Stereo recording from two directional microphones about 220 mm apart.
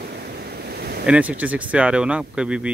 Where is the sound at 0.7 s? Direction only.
45° right (ahead or behind).